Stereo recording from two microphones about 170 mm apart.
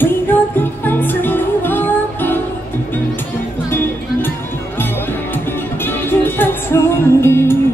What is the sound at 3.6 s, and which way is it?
Music, 10° left (ahead or behind).